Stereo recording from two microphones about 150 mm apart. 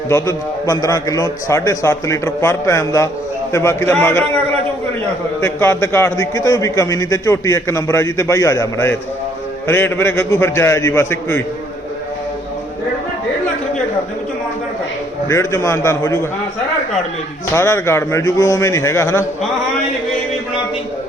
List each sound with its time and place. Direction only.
0.1 s a man's voice: 20° left (ahead or behind)
5.4 s a man's voice: 15° left (ahead or behind)
15.3 s a man's voice: 20° left (ahead or behind)
17.5 s a man's voice: 20° left (ahead or behind)